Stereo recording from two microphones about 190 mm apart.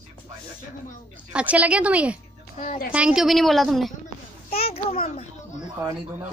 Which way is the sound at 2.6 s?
40° left (ahead or behind).